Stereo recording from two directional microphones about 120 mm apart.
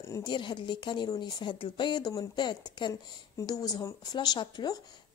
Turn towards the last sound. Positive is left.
turn(degrees=35)  # may be behind; listen again after turning